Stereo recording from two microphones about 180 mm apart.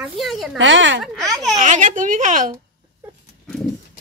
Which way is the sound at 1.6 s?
45° right (ahead or behind).